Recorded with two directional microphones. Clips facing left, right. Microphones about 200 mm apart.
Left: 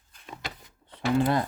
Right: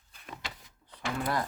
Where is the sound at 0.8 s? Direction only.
25° left (ahead or behind).